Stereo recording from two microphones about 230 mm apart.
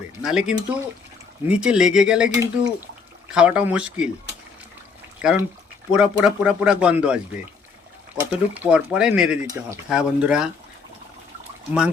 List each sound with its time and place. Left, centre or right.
0.3 s speech: centre
5.2 s speech: centre